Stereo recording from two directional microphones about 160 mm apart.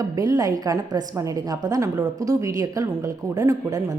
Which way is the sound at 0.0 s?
20° right (ahead or behind).